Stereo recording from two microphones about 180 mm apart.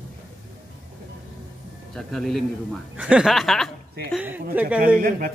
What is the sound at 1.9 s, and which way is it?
A man's voice, centre (ahead or behind).